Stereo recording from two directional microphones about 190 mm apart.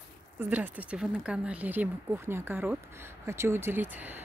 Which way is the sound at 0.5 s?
10° right (ahead or behind).